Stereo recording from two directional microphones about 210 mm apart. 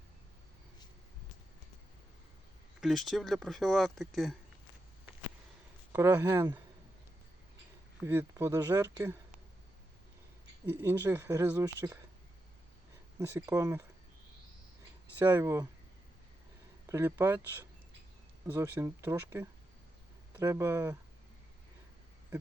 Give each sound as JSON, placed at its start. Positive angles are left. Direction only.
{"t": 2.8, "sound": "speech", "side_deg": 0}
{"t": 5.9, "sound": "speech", "side_deg": -10}
{"t": 8.0, "sound": "speech", "side_deg": -10}
{"t": 10.7, "sound": "speech", "side_deg": -15}
{"t": 13.1, "sound": "speech", "side_deg": -15}
{"t": 15.2, "sound": "speech", "side_deg": -10}
{"t": 16.9, "sound": "speech", "side_deg": -15}